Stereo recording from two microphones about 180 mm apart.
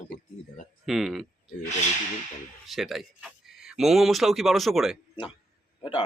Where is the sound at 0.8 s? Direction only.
Centre (ahead or behind).